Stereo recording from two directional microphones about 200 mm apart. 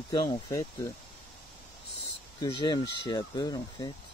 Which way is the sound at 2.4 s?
20° left (ahead or behind).